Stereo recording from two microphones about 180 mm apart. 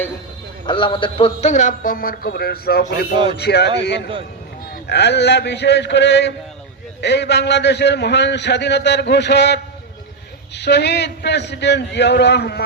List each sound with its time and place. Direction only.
0.7 s a man's voice: 30° left (ahead or behind); by 3.7 s 65° left (ahead or behind)
4.9 s a man's voice: 70° left (ahead or behind)